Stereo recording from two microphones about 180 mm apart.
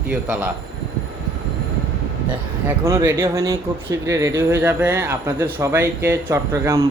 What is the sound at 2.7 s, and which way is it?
A man's voice, 15° right (ahead or behind).